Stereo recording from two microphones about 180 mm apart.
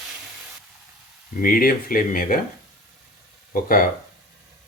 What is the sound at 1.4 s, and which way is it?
Speech, 50° left (ahead or behind).